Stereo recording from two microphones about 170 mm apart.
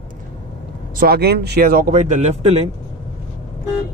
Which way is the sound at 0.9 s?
65° right (ahead or behind).